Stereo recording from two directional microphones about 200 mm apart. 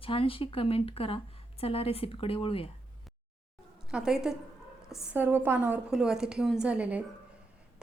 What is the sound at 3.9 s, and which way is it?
A woman's voice, 5° right (ahead or behind).